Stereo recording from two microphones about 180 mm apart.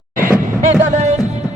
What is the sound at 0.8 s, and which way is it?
Music, 40° right (ahead or behind).